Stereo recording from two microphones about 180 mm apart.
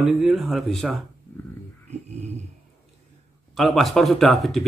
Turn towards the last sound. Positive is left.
turn(degrees=0)  # may be behind; listen again after turning